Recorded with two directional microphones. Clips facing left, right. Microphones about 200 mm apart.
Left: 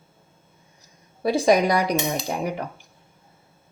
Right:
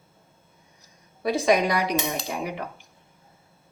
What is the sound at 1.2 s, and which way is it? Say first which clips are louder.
A woman's voice: left 3 dB; 35° left (ahead or behind).